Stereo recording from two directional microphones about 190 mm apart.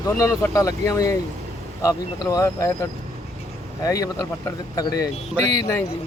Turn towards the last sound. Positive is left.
turn(degrees=15)  # may be behind; listen again after turning